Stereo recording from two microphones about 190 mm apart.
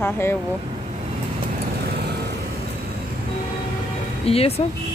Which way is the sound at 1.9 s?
55° right (ahead or behind).